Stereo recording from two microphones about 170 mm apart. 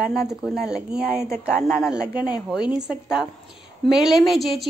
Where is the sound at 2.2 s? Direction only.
5° right (ahead or behind).